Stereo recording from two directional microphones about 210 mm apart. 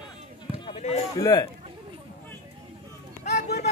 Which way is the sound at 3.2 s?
30° left (ahead or behind).